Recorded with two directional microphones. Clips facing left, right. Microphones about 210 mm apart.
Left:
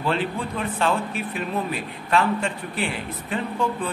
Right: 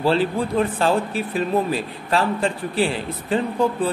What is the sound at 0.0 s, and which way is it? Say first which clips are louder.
Speech: right 6 dB; 35° right (ahead or behind).